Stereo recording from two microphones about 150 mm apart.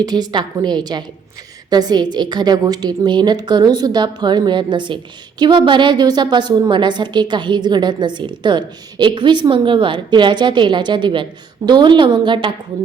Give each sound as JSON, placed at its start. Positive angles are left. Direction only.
{"t": 0.0, "sound": "a woman's voice", "side_deg": -25}